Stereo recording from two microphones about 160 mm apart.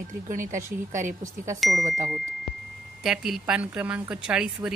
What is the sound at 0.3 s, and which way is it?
Speech, 55° right (ahead or behind).